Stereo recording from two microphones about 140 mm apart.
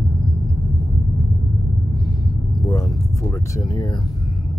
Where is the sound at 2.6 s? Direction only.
25° left (ahead or behind).